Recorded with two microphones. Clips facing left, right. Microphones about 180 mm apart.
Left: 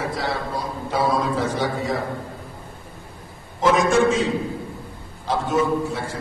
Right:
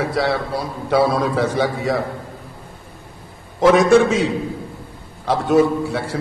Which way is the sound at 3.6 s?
70° right (ahead or behind).